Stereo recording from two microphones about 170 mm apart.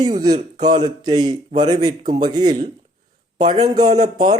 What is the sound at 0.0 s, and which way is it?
A man's voice, 25° right (ahead or behind).